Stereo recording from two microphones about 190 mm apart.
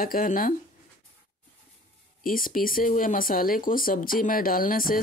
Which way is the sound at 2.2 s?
50° left (ahead or behind).